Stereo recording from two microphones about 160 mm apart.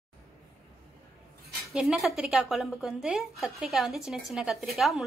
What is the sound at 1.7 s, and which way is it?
A woman's voice, 5° right (ahead or behind).